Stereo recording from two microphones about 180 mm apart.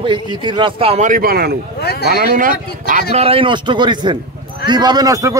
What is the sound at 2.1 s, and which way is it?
Speech, 50° right (ahead or behind).